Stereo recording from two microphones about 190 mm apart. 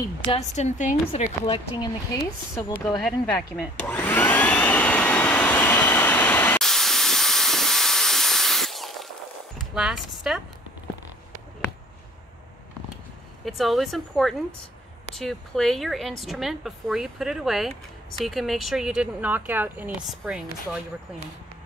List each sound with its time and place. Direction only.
0.3 s a woman's voice: 40° left (ahead or behind); by 3.0 s 15° left (ahead or behind)
3.0 s vacuum cleaner: 5° left (ahead or behind)
9.6 s speech: centre (ahead or behind)
13.5 s speech: centre (ahead or behind)